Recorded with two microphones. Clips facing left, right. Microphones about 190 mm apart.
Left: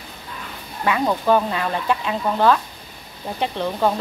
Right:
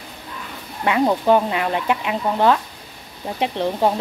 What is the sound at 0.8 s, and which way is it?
Speech, 20° right (ahead or behind).